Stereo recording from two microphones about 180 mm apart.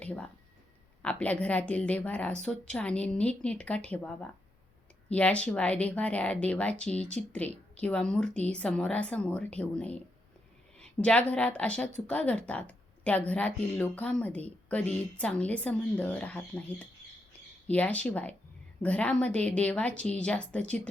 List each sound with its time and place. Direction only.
0.0 s a woman's voice: 10° left (ahead or behind)